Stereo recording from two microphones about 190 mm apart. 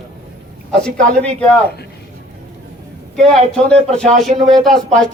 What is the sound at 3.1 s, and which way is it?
Speech, centre (ahead or behind).